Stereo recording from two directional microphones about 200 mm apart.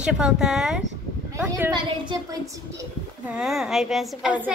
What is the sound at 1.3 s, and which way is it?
A woman's voice, 10° right (ahead or behind).